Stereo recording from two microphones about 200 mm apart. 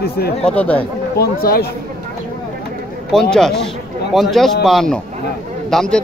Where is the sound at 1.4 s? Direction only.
50° left (ahead or behind).